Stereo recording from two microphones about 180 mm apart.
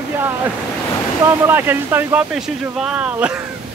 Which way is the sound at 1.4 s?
10° right (ahead or behind).